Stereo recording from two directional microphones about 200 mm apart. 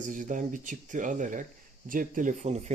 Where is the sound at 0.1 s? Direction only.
40° right (ahead or behind).